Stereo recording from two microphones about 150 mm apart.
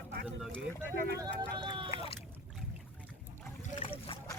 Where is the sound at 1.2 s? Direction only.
30° right (ahead or behind).